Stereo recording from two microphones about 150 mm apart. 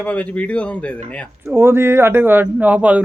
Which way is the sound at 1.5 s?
15° right (ahead or behind).